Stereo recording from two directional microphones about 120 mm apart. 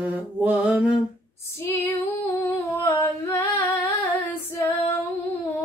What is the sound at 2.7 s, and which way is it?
Female singing, 15° left (ahead or behind).